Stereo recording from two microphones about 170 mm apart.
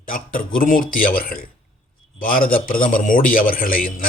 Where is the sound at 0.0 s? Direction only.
55° left (ahead or behind).